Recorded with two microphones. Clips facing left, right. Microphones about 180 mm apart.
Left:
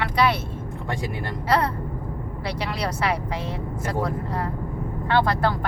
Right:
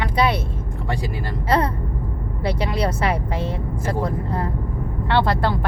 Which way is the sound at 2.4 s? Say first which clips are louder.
Right 6 dB; 25° right (ahead or behind).